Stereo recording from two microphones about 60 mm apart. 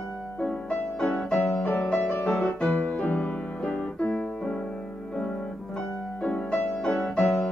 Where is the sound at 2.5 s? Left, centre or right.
Centre.